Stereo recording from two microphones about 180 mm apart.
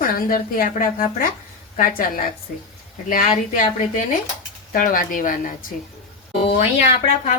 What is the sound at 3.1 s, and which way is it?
A woman's voice, 50° left (ahead or behind).